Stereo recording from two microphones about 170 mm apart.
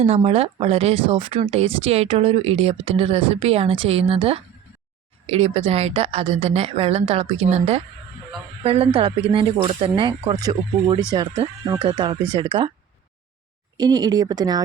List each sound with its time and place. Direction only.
0.0 s a woman's voice: 35° right (ahead or behind)
13.7 s speech: 25° right (ahead or behind)